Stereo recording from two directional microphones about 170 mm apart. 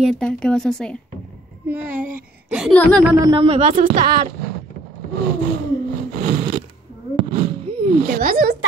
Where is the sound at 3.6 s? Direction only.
50° right (ahead or behind).